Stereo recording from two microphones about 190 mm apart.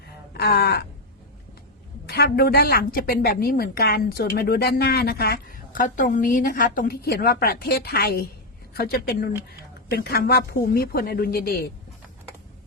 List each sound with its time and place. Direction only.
0.3 s speech: 55° left (ahead or behind)
2.0 s a woman's voice: 55° left (ahead or behind)